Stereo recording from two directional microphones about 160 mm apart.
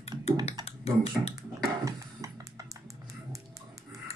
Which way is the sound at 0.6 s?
40° left (ahead or behind).